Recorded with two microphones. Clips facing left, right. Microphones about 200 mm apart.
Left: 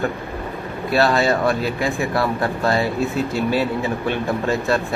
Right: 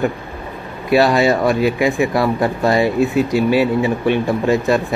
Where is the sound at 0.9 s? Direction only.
15° right (ahead or behind).